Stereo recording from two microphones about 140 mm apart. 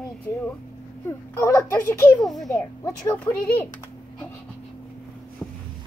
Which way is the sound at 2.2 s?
Centre (ahead or behind).